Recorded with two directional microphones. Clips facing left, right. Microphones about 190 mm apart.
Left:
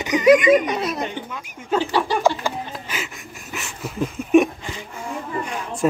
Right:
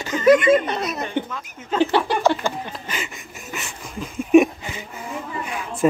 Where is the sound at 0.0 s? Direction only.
15° left (ahead or behind).